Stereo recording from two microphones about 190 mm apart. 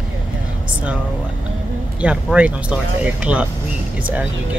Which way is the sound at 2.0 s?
5° right (ahead or behind).